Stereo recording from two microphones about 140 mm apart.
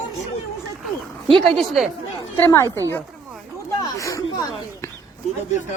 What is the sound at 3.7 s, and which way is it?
Speech, 25° left (ahead or behind).